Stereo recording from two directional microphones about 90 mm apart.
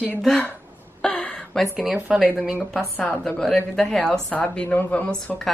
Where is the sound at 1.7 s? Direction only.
5° right (ahead or behind).